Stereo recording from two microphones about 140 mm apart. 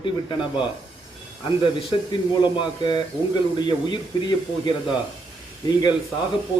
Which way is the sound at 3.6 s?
30° left (ahead or behind).